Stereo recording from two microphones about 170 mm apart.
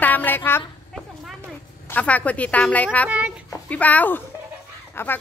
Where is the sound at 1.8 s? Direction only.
10° left (ahead or behind).